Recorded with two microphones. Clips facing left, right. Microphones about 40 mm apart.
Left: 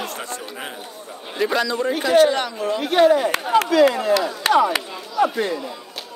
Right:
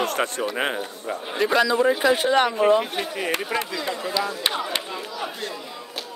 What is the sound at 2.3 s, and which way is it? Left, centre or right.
Speech, right.